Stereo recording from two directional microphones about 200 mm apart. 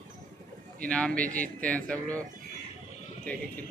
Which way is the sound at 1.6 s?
5° left (ahead or behind).